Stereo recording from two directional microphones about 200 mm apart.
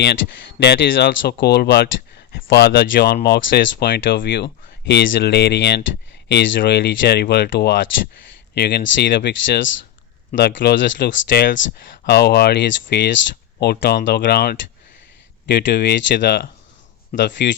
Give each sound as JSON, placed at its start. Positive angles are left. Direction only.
{"t": 0.6, "sound": "speech", "side_deg": 55}
{"t": 10.4, "sound": "speech", "side_deg": 55}